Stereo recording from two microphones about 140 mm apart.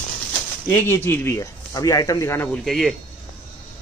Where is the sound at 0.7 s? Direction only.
15° left (ahead or behind).